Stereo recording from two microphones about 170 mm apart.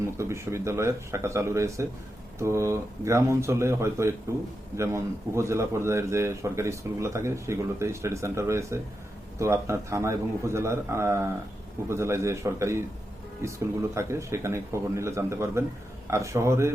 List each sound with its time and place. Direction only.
0.2 s speech: 15° right (ahead or behind)